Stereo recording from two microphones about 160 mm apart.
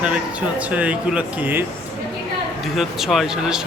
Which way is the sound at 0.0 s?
5° right (ahead or behind).